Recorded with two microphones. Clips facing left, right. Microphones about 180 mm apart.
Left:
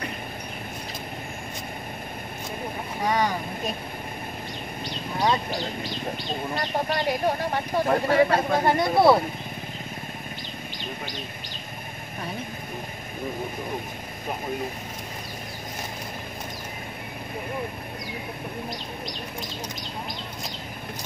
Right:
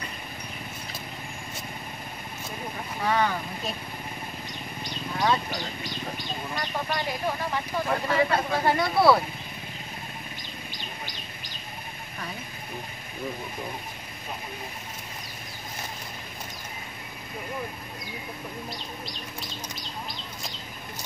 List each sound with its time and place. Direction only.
3.0 s speech: 15° left (ahead or behind)
5.1 s speech: 15° left (ahead or behind)
6.6 s speech: 55° left (ahead or behind)
8.6 s speech: 20° left (ahead or behind)